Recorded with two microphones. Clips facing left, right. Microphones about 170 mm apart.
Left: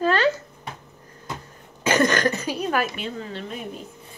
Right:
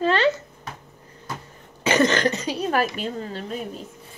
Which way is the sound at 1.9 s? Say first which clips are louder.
Right 1 dB; 25° right (ahead or behind).